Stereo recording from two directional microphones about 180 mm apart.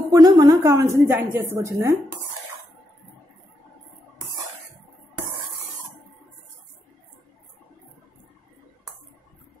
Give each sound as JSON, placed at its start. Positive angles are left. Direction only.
{"t": 0.1, "sound": "a woman's voice", "side_deg": -20}